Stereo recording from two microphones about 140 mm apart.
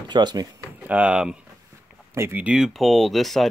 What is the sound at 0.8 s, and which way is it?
Speech, 10° right (ahead or behind).